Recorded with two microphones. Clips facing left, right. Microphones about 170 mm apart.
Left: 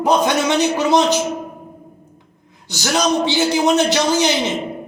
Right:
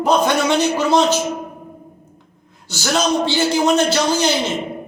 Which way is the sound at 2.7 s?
15° left (ahead or behind).